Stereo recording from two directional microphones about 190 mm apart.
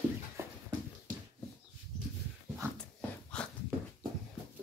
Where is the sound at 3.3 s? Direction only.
5° left (ahead or behind).